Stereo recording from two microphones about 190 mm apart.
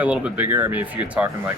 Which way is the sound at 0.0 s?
10° right (ahead or behind).